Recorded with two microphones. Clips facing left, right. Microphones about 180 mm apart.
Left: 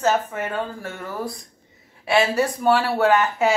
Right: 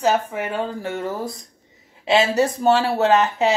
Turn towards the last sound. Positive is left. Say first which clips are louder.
# right 1 dB
turn(degrees=-20)  # may be behind; listen again after turning